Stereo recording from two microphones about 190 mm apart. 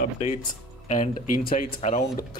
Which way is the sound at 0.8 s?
45° left (ahead or behind).